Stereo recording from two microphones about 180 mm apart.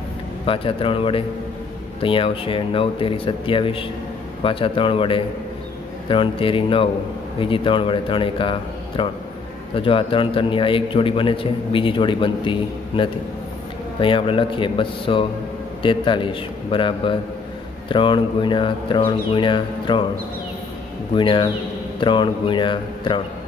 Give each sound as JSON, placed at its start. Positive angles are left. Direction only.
{"t": 0.5, "sound": "a man's voice", "side_deg": 30}
{"t": 21.1, "sound": "a man's voice", "side_deg": 25}